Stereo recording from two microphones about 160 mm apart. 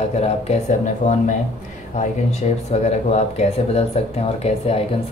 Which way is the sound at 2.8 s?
40° left (ahead or behind).